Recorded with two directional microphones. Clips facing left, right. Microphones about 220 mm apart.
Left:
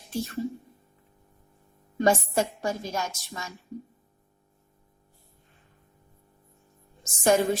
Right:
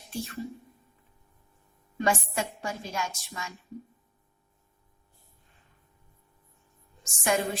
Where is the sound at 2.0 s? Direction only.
40° left (ahead or behind).